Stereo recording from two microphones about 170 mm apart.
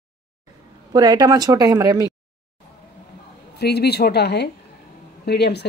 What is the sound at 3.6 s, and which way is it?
Speech, 70° left (ahead or behind).